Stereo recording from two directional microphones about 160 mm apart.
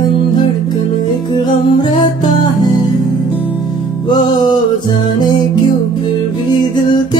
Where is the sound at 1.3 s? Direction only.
30° left (ahead or behind).